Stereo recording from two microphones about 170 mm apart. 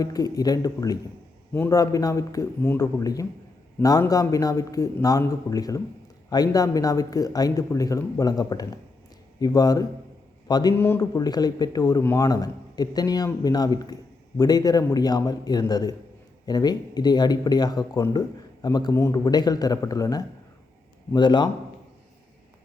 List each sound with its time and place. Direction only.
0.0 s a man's voice: 20° left (ahead or behind)